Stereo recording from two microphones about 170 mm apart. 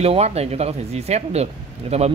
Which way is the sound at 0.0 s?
40° right (ahead or behind).